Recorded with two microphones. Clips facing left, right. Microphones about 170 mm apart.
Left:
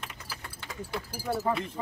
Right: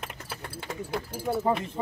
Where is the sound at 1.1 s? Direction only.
25° right (ahead or behind).